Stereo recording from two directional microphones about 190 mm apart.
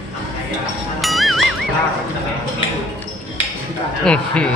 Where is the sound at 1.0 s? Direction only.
Centre (ahead or behind).